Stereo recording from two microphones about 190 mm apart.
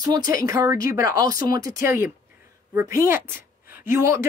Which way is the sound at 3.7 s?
15° right (ahead or behind).